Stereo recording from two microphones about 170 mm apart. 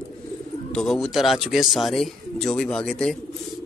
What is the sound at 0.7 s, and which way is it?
A man's voice, 5° left (ahead or behind).